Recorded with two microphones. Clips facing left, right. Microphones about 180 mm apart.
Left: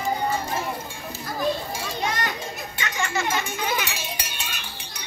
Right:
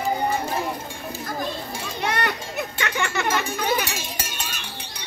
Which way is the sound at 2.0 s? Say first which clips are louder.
Right 4 dB; 65° right (ahead or behind).